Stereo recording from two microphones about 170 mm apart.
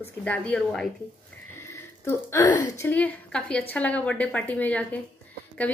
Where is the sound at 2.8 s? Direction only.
10° left (ahead or behind).